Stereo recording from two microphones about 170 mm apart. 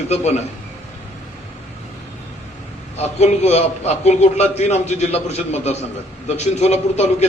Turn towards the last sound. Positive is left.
turn(degrees=40)  # may be behind; listen again after turning